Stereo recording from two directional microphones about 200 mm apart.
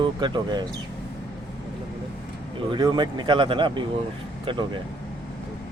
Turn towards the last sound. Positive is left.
turn(degrees=-25)  # may be behind; listen again after turning